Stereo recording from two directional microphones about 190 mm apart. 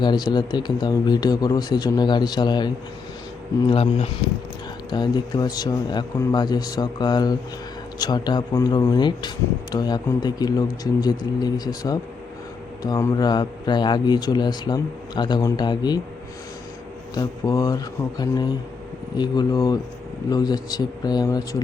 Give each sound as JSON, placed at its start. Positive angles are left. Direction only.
{"t": 0.0, "sound": "a man's voice", "side_deg": 20}
{"t": 3.7, "sound": "a man's voice", "side_deg": 30}
{"t": 17.2, "sound": "a man's voice", "side_deg": 20}